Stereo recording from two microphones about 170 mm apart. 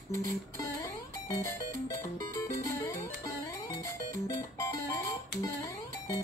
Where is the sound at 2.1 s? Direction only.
20° left (ahead or behind).